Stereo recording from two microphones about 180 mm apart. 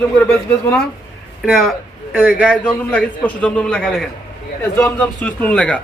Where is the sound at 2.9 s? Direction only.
10° left (ahead or behind).